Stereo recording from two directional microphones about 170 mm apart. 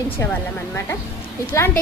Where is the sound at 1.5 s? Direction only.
15° left (ahead or behind).